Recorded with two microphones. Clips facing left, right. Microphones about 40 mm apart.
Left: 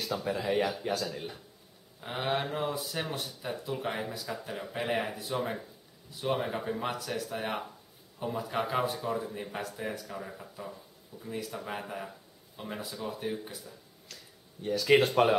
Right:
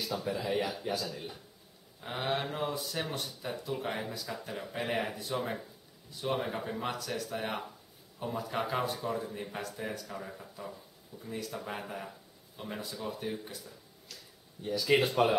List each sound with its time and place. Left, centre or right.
0.1 s speech: left; by 13.7 s centre
14.6 s speech: centre